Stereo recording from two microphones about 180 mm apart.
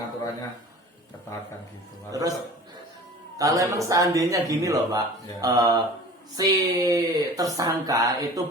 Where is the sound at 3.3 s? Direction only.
20° right (ahead or behind).